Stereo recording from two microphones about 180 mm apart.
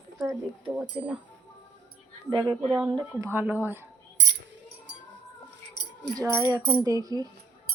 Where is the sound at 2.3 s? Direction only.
25° right (ahead or behind).